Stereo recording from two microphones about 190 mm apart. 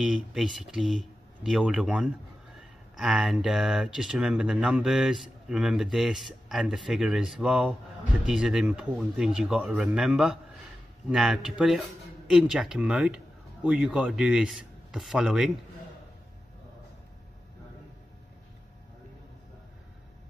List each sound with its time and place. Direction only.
0.0 s speech: 5° right (ahead or behind)